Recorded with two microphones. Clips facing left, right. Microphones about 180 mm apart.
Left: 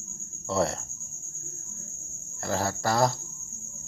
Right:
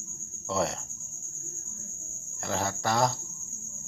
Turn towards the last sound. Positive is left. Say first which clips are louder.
# left 2 dB
turn(degrees=5)  # may be behind; listen again after turning